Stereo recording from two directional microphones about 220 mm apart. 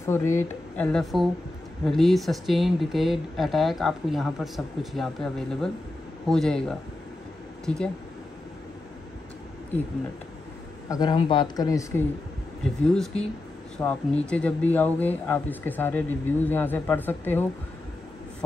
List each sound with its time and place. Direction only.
0.0 s speech: 10° left (ahead or behind)
10.9 s speech: 20° left (ahead or behind)